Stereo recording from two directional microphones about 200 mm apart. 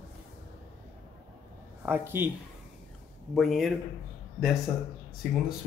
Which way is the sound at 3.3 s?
Centre (ahead or behind).